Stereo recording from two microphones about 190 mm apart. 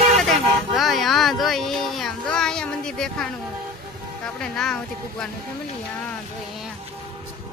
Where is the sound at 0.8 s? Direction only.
Centre (ahead or behind).